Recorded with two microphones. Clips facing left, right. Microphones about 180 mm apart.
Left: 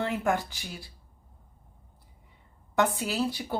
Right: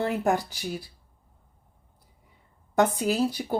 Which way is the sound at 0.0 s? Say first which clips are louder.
Right 3 dB; 35° right (ahead or behind).